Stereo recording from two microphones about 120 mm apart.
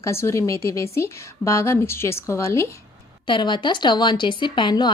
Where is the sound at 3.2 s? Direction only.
40° left (ahead or behind).